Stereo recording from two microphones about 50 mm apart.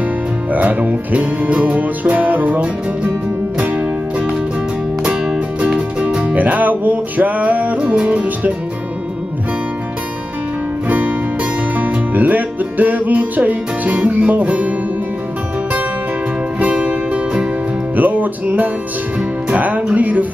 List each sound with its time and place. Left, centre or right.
0.5 s music: right
5.0 s music: centre
10.9 s music: right
16.5 s music: right
17.9 s music: right